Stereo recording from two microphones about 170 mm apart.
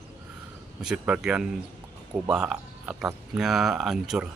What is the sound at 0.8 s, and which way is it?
Speech, 5° right (ahead or behind).